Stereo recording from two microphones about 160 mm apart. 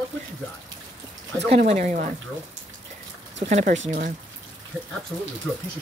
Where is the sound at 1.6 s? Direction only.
50° right (ahead or behind).